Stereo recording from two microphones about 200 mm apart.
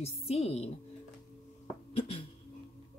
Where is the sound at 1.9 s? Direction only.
25° left (ahead or behind).